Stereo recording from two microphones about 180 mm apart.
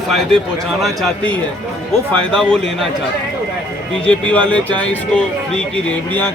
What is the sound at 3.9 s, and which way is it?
Speech, 5° left (ahead or behind).